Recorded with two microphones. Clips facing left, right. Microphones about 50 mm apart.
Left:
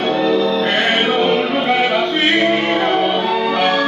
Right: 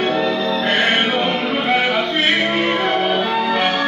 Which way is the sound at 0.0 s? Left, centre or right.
Centre.